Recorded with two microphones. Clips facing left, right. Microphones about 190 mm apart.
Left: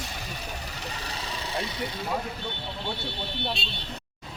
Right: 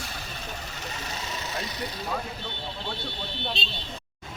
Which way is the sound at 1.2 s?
30° left (ahead or behind).